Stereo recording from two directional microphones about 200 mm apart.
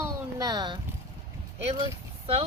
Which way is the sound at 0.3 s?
20° right (ahead or behind).